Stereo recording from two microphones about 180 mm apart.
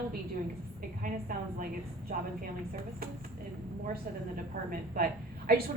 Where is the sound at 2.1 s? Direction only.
50° right (ahead or behind).